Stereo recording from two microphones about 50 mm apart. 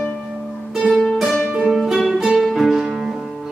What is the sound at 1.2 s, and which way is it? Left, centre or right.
Music, centre.